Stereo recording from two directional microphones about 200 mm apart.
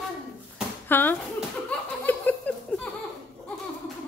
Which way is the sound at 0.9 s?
10° left (ahead or behind).